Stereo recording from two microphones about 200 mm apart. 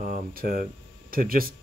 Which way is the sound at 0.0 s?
45° right (ahead or behind).